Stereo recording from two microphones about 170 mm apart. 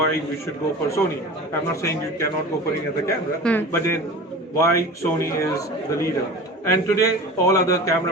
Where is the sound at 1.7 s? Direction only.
15° left (ahead or behind).